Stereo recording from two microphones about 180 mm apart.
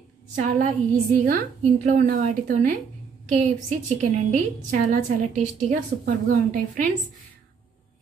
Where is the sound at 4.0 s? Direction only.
40° right (ahead or behind).